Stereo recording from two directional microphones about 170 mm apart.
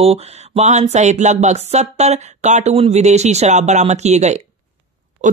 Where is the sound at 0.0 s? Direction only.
35° right (ahead or behind).